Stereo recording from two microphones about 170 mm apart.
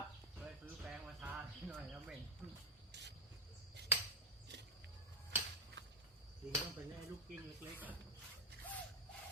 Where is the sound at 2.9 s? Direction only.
90° right.